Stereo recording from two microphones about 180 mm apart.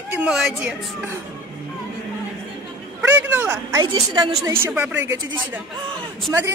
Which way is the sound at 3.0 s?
10° right (ahead or behind).